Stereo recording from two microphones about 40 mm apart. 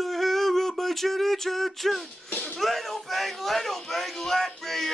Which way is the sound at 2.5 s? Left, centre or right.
Centre.